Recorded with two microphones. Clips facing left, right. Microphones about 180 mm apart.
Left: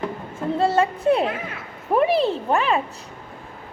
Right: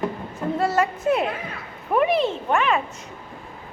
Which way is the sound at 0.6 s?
30° left (ahead or behind).